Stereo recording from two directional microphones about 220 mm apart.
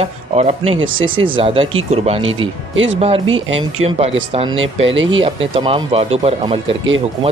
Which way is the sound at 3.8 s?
30° right (ahead or behind).